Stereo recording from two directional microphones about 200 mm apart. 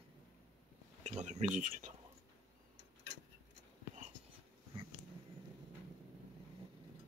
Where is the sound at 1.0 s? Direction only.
35° right (ahead or behind).